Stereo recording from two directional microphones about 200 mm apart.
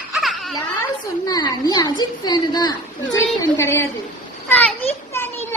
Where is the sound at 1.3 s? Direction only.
20° left (ahead or behind).